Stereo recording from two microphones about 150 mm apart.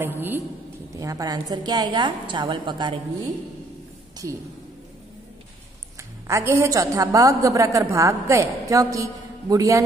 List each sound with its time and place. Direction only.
0.0 s a woman's voice: 15° right (ahead or behind)
0.9 s a woman's voice: 25° right (ahead or behind)
6.2 s a woman's voice: 20° right (ahead or behind)